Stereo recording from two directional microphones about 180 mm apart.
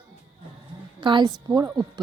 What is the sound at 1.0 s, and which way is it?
Speech, 25° right (ahead or behind).